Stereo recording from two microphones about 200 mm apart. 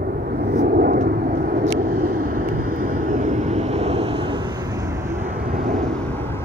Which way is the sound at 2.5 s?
90° right.